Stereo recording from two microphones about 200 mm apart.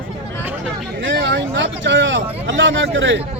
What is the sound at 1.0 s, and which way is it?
Speech, 65° right (ahead or behind).